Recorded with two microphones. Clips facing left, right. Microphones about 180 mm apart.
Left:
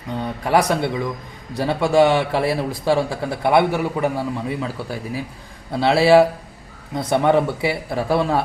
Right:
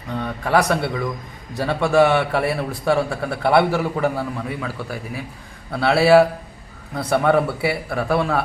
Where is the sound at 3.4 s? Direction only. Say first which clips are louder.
Even; 15° left (ahead or behind).